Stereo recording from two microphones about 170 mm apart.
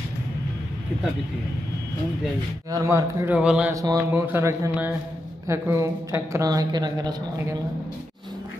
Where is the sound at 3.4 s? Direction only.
5° right (ahead or behind).